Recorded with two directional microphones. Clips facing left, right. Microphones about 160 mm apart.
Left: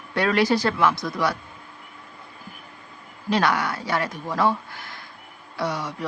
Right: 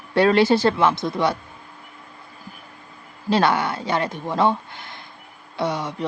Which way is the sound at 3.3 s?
30° right (ahead or behind).